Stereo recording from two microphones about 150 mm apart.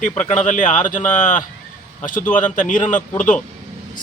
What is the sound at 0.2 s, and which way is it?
Speech, 55° left (ahead or behind).